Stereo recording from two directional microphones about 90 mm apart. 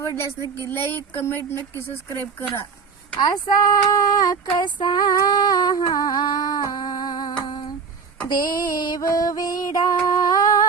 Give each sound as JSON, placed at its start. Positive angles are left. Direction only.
{"t": 0.0, "sound": "speech", "side_deg": 35}
{"t": 3.2, "sound": "speech", "side_deg": 45}
{"t": 8.3, "sound": "music", "side_deg": 50}